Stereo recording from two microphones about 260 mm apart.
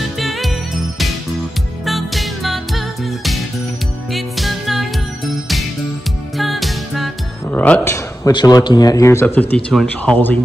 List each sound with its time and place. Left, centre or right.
0.2 s music: centre
6.3 s speech: centre